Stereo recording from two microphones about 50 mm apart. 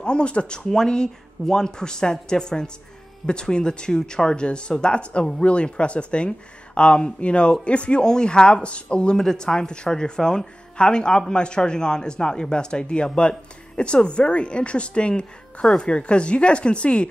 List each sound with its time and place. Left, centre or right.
0.0 s speech: left